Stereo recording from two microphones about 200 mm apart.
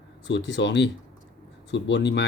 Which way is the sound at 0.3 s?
60° left (ahead or behind).